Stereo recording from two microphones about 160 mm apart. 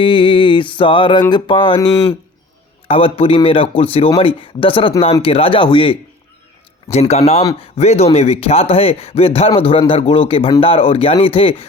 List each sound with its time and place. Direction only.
0.0 s speech: 30° left (ahead or behind)
7.1 s speech: 40° left (ahead or behind)